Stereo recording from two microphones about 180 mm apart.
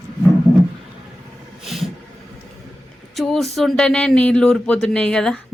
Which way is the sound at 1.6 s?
Centre (ahead or behind).